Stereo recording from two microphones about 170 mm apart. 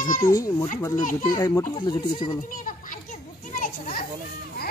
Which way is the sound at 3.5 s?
55° left (ahead or behind).